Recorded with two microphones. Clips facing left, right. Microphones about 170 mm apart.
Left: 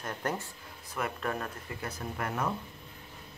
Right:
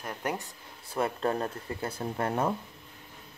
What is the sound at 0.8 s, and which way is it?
Speech, 30° right (ahead or behind).